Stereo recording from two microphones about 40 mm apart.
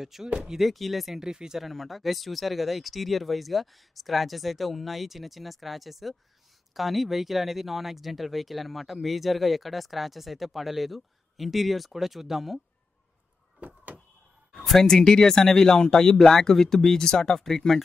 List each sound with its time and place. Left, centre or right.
0.0 s speech: centre
1.2 s speech: centre
1.6 s speech: centre
14.5 s speech: centre